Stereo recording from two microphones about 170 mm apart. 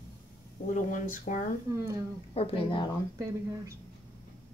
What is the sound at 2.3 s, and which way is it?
Speech, 35° left (ahead or behind).